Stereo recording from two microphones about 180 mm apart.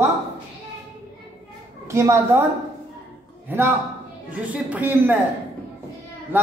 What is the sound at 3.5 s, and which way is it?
Speech, 10° right (ahead or behind).